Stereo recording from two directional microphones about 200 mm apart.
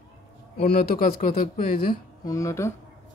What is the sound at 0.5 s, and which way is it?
Speech, 50° left (ahead or behind).